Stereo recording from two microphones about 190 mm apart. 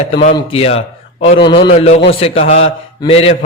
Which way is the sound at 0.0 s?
30° left (ahead or behind).